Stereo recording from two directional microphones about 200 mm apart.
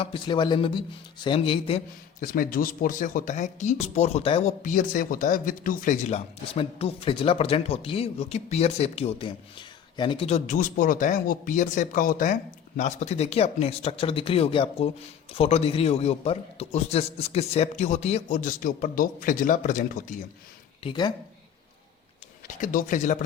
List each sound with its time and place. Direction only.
0.0 s a man's voice: 25° left (ahead or behind)
2.2 s speech: 45° left (ahead or behind)
20.8 s a man's voice: 25° left (ahead or behind)
22.6 s speech: 40° left (ahead or behind)